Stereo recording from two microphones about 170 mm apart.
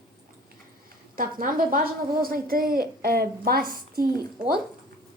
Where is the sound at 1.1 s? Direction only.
55° right (ahead or behind).